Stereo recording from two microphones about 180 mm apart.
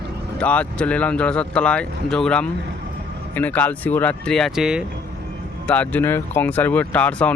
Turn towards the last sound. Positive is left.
turn(degrees=5)  # may be behind; listen again after turning